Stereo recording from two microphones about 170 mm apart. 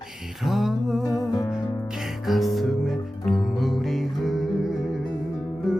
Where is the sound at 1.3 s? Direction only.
20° left (ahead or behind).